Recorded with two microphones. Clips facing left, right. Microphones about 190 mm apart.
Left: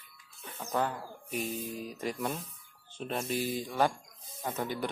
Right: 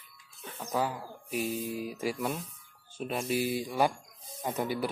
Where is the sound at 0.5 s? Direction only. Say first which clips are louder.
Right 1 dB; 5° right (ahead or behind).